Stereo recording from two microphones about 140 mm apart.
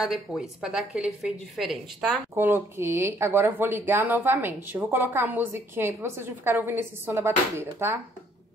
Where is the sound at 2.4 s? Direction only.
15° right (ahead or behind).